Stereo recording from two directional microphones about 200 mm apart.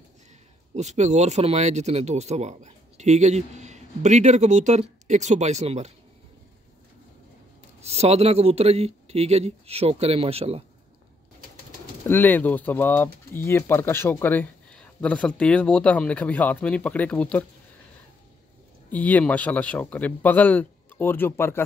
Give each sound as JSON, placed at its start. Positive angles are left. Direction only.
{"t": 0.7, "sound": "speech", "side_deg": -35}
{"t": 7.8, "sound": "speech", "side_deg": -30}
{"t": 12.1, "sound": "speech", "side_deg": 10}
{"t": 18.9, "sound": "speech", "side_deg": 10}